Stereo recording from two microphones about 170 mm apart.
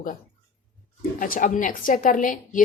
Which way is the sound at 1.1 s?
55° left (ahead or behind).